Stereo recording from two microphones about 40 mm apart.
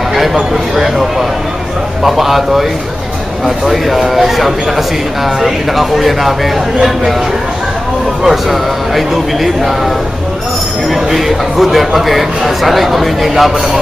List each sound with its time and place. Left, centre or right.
0.1 s speech: centre
2.0 s speech: centre
8.2 s speech: centre
10.9 s speech: centre